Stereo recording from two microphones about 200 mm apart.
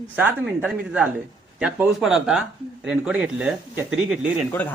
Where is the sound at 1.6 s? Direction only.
5° right (ahead or behind).